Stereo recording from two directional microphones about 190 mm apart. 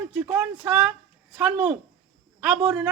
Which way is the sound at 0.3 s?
5° right (ahead or behind).